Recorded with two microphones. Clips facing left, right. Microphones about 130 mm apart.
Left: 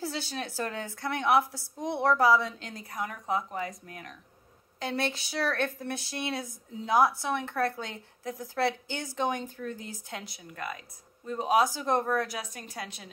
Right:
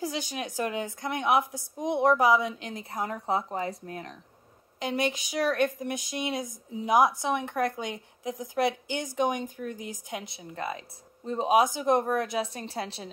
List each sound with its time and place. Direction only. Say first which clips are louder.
0.0 s a woman's voice: right 2 dB; 15° right (ahead or behind); by 4.2 s 30° right (ahead or behind)
4.7 s a woman's voice: right 3 dB; 15° right (ahead or behind)